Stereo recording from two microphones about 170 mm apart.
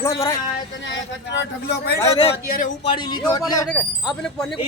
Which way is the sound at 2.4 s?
55° left (ahead or behind).